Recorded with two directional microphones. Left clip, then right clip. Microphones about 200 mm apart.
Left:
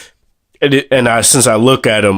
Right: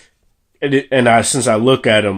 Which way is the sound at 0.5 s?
45° left (ahead or behind).